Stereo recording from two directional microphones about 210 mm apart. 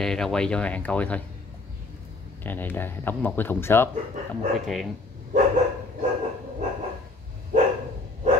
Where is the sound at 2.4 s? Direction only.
10° left (ahead or behind).